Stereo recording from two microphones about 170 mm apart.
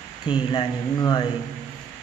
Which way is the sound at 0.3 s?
30° left (ahead or behind).